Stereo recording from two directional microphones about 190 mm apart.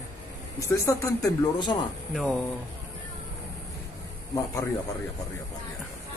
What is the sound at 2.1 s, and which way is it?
Speech, centre (ahead or behind).